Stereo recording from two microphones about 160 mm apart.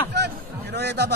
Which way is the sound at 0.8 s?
90° right.